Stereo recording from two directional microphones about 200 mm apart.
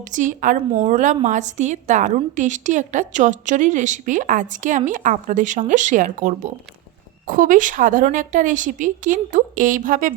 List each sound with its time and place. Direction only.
0.0 s a woman's voice: 40° right (ahead or behind)